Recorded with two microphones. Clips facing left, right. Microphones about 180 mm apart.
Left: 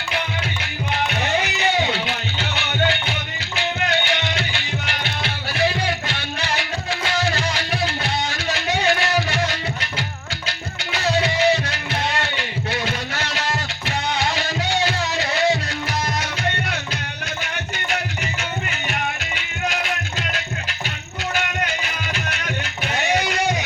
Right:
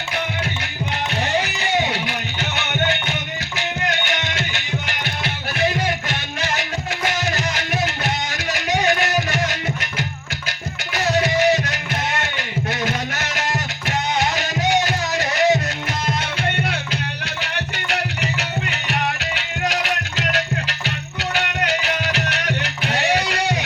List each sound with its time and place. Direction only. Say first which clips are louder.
2.4 s music: even; 20° right (ahead or behind)
7.1 s music: left 4 dB; 20° right (ahead or behind)
8.5 s music: right 2 dB; 15° right (ahead or behind)
11.2 s music: right 2 dB; 15° right (ahead or behind)
14.3 s music: right 3 dB; 20° right (ahead or behind)
21.3 s music: right 3 dB; 70° right (ahead or behind)